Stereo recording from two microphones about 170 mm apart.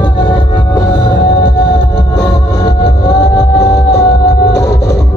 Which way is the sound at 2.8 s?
85° left.